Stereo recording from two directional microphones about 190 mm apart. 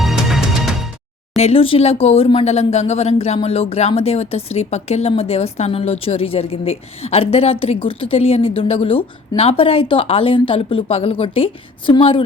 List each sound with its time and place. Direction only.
0.0 s music: centre (ahead or behind)
1.4 s speech: 30° left (ahead or behind)